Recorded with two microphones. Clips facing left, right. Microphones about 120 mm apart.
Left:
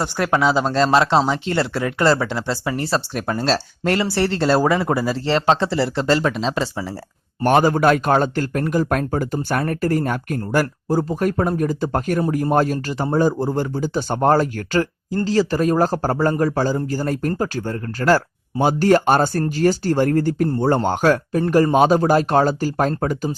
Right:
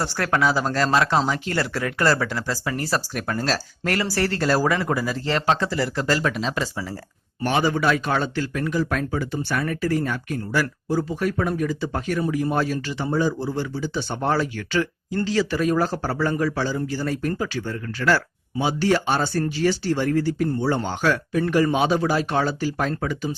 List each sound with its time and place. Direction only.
0.0 s speech: 20° left (ahead or behind)
7.4 s speech: 50° left (ahead or behind)